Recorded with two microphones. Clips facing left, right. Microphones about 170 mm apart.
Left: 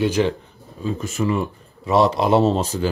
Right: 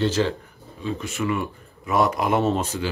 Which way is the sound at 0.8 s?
35° left (ahead or behind).